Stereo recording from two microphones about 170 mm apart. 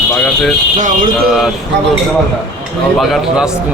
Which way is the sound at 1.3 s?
Centre (ahead or behind).